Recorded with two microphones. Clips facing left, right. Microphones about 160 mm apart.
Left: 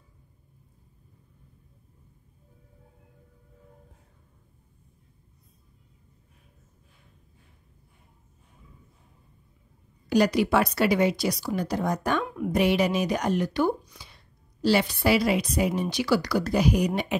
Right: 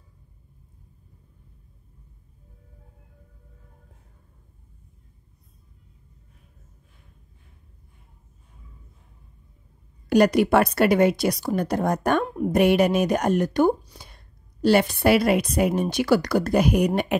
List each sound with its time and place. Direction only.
10.0 s a woman's voice: 55° right (ahead or behind)